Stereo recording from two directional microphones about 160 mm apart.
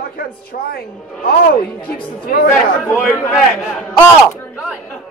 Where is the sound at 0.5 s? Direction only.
60° left (ahead or behind).